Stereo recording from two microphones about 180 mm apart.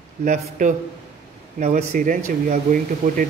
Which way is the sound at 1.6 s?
40° right (ahead or behind).